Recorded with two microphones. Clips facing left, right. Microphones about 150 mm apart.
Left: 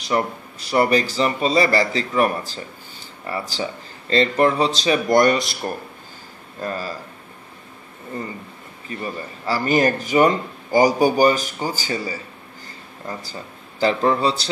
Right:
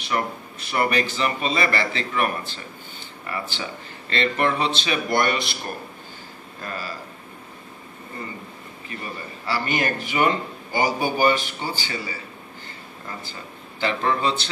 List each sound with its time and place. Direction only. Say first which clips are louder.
0.0 s a man's voice: left 4 dB; 35° left (ahead or behind)
6.6 s a man's voice: left 6 dB; 40° left (ahead or behind)
9.5 s a man's voice: left 6 dB; 40° left (ahead or behind)
13.2 s speech: left 2 dB; 40° left (ahead or behind)